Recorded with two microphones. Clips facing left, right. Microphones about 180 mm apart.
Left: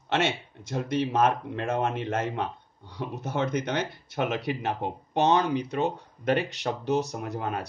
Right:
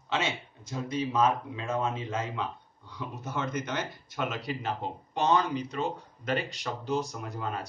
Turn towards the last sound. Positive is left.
turn(degrees=60)  # may be behind; listen again after turning